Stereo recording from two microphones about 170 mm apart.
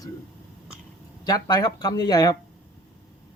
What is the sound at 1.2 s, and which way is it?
Speech, 25° left (ahead or behind).